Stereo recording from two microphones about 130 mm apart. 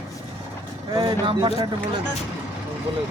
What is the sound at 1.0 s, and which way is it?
Speech, 35° right (ahead or behind).